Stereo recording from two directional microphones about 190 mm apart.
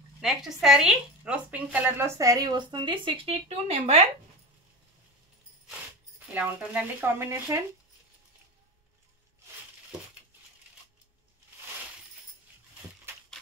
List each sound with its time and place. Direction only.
0.2 s a woman's voice: centre (ahead or behind); by 4.0 s 35° right (ahead or behind)
6.1 s a woman's voice: 10° right (ahead or behind)